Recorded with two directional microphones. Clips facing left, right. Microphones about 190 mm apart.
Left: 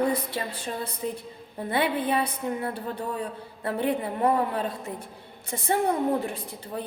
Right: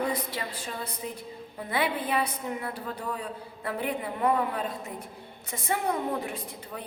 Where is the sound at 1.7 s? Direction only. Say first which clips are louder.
Left 3 dB; 30° left (ahead or behind).